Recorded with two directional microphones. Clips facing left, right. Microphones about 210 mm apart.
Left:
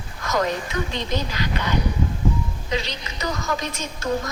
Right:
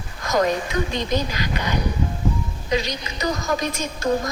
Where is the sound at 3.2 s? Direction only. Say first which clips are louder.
Right 3 dB; 35° right (ahead or behind).